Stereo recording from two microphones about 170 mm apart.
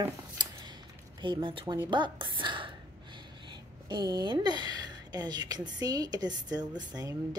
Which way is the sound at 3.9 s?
25° right (ahead or behind).